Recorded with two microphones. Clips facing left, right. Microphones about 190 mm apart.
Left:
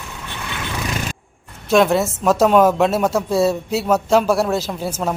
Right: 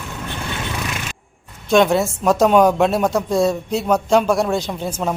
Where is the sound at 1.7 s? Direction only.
Centre (ahead or behind).